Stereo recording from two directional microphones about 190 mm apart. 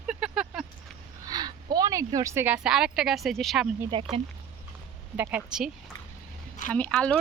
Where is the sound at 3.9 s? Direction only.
25° right (ahead or behind).